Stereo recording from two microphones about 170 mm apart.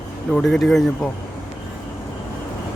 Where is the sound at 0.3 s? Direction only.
Centre (ahead or behind).